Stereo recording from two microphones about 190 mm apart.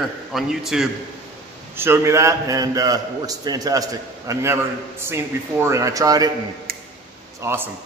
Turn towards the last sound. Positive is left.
turn(degrees=-10)  # may be behind; listen again after turning